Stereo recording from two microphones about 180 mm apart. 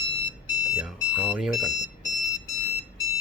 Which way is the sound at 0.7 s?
5° right (ahead or behind).